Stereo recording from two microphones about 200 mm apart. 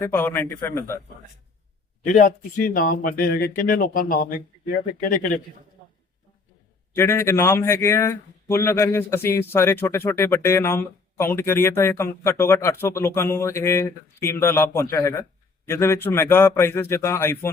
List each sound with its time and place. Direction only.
0.0 s a man's voice: 10° left (ahead or behind)
2.0 s speech: 40° left (ahead or behind)
6.9 s a man's voice: 10° left (ahead or behind)